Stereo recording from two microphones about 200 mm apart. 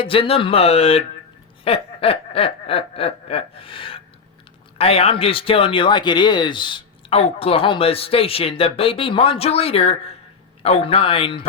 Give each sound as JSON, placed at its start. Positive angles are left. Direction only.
{"t": 0.0, "sound": "speech", "side_deg": 25}